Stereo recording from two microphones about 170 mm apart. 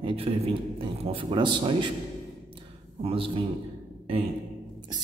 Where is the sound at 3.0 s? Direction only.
30° right (ahead or behind).